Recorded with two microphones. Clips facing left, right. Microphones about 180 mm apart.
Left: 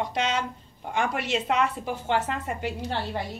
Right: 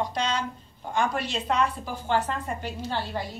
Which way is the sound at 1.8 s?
65° left (ahead or behind).